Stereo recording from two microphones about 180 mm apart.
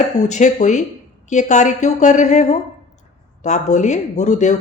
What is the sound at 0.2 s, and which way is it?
Speech, 40° left (ahead or behind).